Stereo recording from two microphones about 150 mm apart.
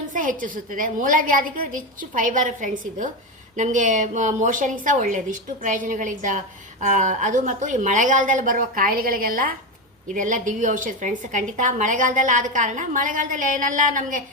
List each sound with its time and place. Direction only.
0.1 s a woman's voice: 65° right (ahead or behind)
10.2 s a woman's voice: 60° right (ahead or behind)